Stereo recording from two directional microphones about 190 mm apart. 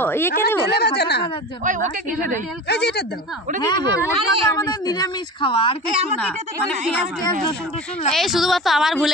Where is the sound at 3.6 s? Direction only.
25° left (ahead or behind).